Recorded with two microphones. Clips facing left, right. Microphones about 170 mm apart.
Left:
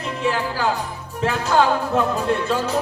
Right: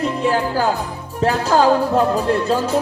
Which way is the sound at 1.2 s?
35° right (ahead or behind).